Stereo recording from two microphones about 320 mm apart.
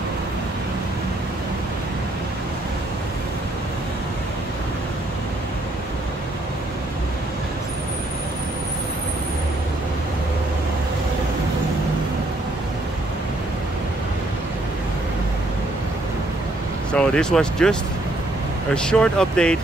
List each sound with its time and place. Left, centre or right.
16.9 s speech: centre
18.8 s speech: centre